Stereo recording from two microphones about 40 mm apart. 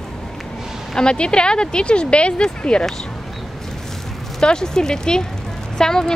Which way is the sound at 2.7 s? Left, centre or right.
Centre.